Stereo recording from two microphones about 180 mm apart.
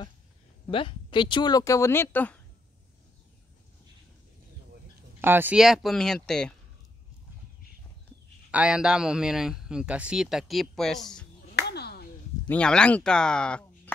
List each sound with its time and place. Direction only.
0.7 s speech: 30° left (ahead or behind); by 2.3 s 10° left (ahead or behind)
5.2 s a man's voice: 10° right (ahead or behind)
8.5 s a man's voice: 5° right (ahead or behind)
11.5 s finger snapping: 65° left (ahead or behind)
12.4 s speech: 5° left (ahead or behind)